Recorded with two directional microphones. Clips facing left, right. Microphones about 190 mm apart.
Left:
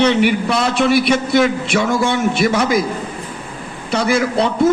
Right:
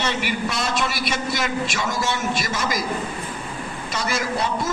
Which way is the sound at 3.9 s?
65° left (ahead or behind).